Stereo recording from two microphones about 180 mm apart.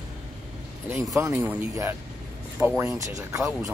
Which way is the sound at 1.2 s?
15° right (ahead or behind).